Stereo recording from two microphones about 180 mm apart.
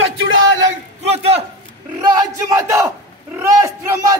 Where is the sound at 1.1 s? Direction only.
35° right (ahead or behind).